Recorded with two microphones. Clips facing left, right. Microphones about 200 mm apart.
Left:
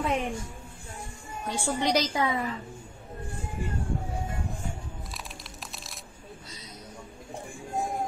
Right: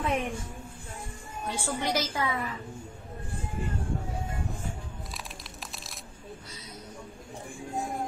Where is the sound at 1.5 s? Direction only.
15° left (ahead or behind).